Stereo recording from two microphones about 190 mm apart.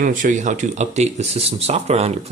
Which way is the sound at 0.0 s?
45° right (ahead or behind).